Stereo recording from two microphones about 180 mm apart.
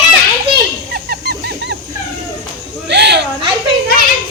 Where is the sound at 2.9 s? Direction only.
70° right (ahead or behind).